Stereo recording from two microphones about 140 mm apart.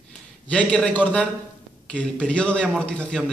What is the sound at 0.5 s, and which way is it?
A man's voice, 10° left (ahead or behind).